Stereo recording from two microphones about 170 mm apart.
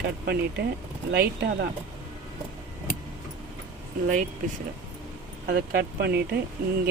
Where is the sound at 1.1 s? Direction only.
65° right (ahead or behind).